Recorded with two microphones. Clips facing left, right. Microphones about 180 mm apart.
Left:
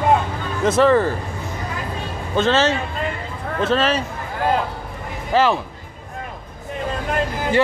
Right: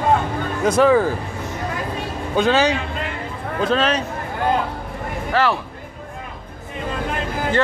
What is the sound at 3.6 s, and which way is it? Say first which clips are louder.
Speech: even; 5° left (ahead or behind).